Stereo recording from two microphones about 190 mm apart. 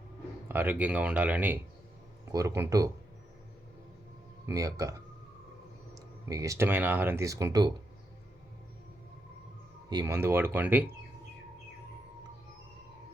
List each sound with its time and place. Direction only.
0.4 s speech: 10° right (ahead or behind)
4.4 s speech: 15° right (ahead or behind)
9.9 s speech: 20° right (ahead or behind)